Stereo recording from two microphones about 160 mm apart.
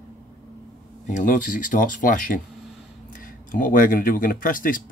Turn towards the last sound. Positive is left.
turn(degrees=60)  # may be behind; listen again after turning